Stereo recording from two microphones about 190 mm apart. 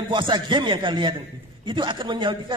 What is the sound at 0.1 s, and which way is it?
A man's voice, 25° right (ahead or behind).